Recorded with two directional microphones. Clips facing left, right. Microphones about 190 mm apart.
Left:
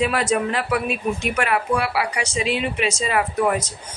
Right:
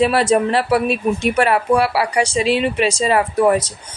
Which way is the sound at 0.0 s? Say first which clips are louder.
Right 6 dB; 35° right (ahead or behind).